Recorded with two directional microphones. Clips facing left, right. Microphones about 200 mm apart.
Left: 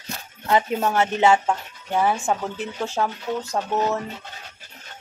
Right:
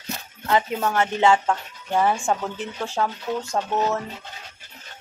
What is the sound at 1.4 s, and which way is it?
Speech, 5° left (ahead or behind).